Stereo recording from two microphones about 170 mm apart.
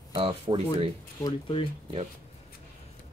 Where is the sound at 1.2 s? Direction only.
30° left (ahead or behind).